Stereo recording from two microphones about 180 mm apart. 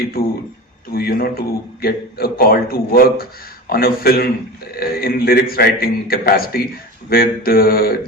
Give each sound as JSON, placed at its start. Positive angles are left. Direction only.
{"t": 0.0, "sound": "a man's voice", "side_deg": 55}